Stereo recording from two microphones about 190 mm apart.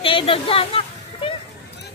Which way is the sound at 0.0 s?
30° left (ahead or behind).